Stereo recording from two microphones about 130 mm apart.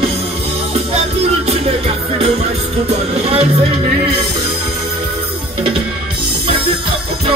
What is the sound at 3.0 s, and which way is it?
Speech, 50° right (ahead or behind).